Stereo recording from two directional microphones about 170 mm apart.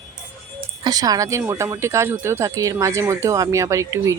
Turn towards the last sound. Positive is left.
turn(degrees=-20)  # may be behind; listen again after turning